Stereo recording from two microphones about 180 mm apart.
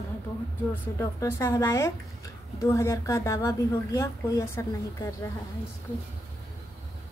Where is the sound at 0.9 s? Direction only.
15° left (ahead or behind).